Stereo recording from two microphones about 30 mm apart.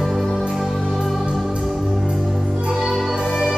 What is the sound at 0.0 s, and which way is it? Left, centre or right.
Music, centre.